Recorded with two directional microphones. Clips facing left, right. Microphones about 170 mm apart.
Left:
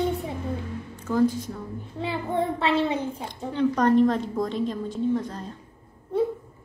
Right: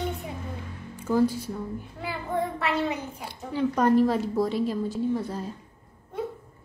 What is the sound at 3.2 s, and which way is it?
A woman's voice, 10° right (ahead or behind).